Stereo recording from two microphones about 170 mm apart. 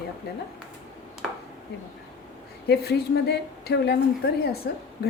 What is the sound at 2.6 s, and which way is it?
A woman's voice, 70° left (ahead or behind).